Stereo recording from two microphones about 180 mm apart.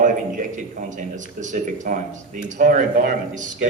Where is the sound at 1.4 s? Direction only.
45° right (ahead or behind).